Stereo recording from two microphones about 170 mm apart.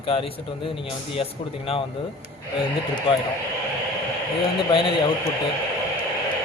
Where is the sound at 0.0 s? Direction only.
35° left (ahead or behind).